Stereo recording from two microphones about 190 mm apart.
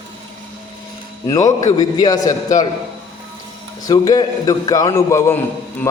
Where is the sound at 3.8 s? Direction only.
20° left (ahead or behind).